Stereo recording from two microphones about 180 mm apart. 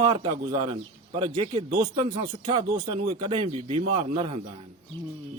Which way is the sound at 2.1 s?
30° right (ahead or behind).